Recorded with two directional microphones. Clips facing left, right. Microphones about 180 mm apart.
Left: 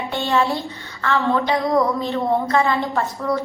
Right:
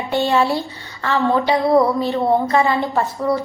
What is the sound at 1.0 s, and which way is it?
A woman's voice, 15° right (ahead or behind).